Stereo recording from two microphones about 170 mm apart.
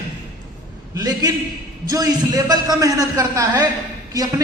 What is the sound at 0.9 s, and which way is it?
A man's voice, 25° right (ahead or behind).